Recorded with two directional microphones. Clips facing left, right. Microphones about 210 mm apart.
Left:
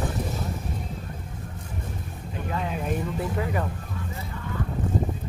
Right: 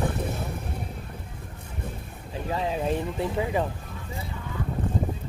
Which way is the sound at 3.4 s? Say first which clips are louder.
Right 2 dB; 20° right (ahead or behind).